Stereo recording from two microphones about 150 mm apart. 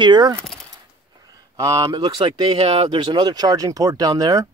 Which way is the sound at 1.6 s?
20° right (ahead or behind).